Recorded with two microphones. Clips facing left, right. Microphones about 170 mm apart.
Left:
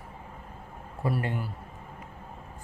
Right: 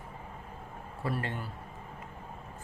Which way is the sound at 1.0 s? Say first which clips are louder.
Left 5 dB; 15° left (ahead or behind).